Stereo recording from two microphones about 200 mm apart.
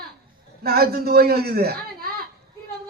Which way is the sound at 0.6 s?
50° right (ahead or behind).